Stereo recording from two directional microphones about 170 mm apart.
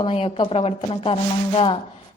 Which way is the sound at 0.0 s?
35° left (ahead or behind).